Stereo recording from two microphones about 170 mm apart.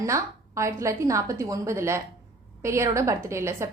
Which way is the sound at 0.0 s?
15° right (ahead or behind).